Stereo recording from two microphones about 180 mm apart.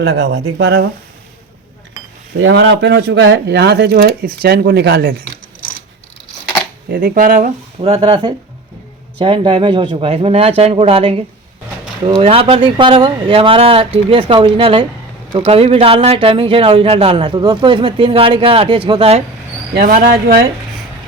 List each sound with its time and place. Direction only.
0.0 s speech: 75° right (ahead or behind)
2.4 s speech: 90° right; by 5.1 s 65° right (ahead or behind)
7.1 s speech: 45° right (ahead or behind)
7.8 s a man's voice: 35° right (ahead or behind)
12.2 s a man's voice: 30° right (ahead or behind)
19.8 s speech: 50° right (ahead or behind)